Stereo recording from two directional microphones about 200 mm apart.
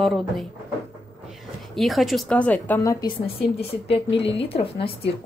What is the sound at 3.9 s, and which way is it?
A woman's voice, 30° left (ahead or behind).